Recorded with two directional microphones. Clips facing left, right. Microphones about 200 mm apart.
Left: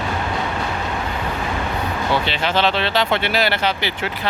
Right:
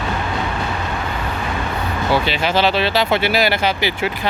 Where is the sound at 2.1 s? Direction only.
10° right (ahead or behind).